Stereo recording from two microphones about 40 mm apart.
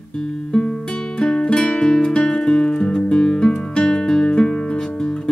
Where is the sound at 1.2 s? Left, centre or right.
Centre.